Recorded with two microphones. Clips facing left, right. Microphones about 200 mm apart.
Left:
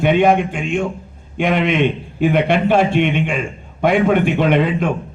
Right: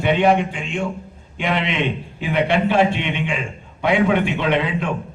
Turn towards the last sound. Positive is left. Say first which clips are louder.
# left 5 dB
turn(degrees=50)  # may be behind; listen again after turning